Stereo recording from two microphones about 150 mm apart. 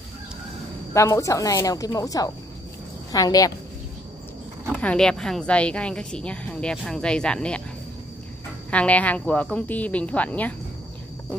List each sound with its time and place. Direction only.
0.9 s a woman's voice: 20° left (ahead or behind)
4.6 s a woman's voice: 5° left (ahead or behind)
8.6 s speech: 10° left (ahead or behind)